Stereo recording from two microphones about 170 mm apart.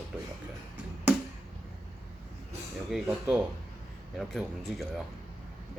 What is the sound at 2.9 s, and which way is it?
Speech, 5° right (ahead or behind).